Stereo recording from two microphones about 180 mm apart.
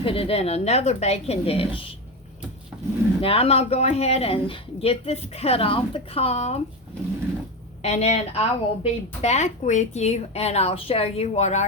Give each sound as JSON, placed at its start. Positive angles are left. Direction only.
{"t": 0.0, "sound": "a woman's voice", "side_deg": 30}
{"t": 3.2, "sound": "a woman's voice", "side_deg": 30}
{"t": 7.8, "sound": "a woman's voice", "side_deg": 40}